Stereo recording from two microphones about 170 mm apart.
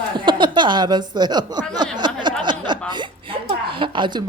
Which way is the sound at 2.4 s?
25° right (ahead or behind).